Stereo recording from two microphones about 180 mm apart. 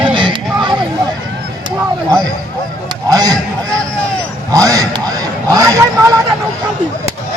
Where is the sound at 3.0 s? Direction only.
20° right (ahead or behind).